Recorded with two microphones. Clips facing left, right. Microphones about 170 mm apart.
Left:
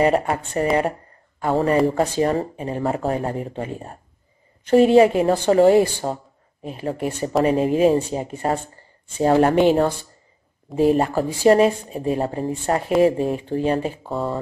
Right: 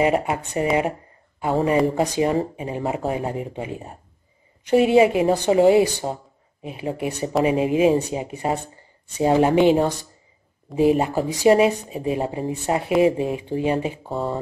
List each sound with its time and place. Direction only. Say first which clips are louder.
0.0 s speech: left 2 dB; 10° right (ahead or behind)
10.7 s speech: left 1 dB; 5° right (ahead or behind)
14.0 s speech: left 1 dB; centre (ahead or behind)